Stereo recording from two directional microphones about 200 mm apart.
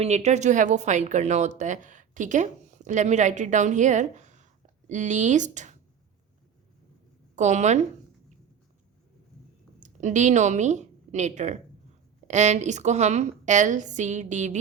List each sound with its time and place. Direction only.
0.0 s a woman's voice: 35° right (ahead or behind)
7.3 s a woman's voice: 35° right (ahead or behind)
9.8 s a woman's voice: 35° right (ahead or behind)